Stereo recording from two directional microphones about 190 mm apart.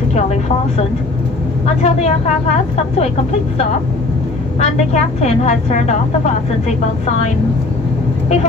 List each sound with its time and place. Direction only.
0.1 s a woman's voice: 35° left (ahead or behind)
4.6 s a woman's voice: 35° left (ahead or behind)